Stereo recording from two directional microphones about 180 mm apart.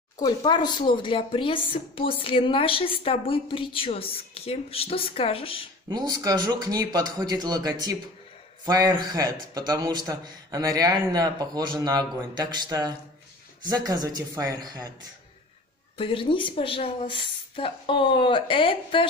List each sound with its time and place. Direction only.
0.2 s a woman's voice: 25° left (ahead or behind)
5.9 s a man's voice: 20° right (ahead or behind)
16.0 s speech: 30° left (ahead or behind)